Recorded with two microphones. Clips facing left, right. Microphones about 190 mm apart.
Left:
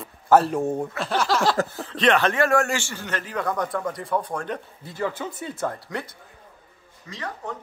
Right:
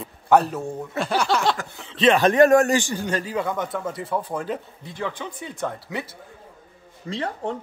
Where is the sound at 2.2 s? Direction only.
15° right (ahead or behind).